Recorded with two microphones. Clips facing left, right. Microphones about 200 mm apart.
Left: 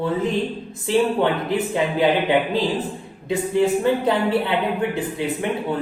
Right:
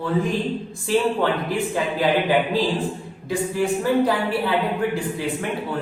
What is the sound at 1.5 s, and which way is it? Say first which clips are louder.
Speech: left 2 dB; 20° left (ahead or behind).